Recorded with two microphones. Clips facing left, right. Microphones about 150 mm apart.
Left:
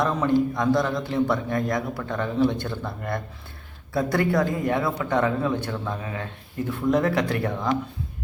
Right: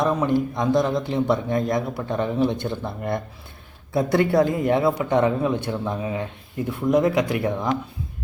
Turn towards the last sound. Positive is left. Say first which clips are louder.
# right 2 dB
turn(degrees=-15)  # may be behind; listen again after turning